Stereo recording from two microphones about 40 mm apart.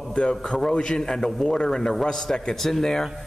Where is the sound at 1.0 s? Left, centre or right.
Centre.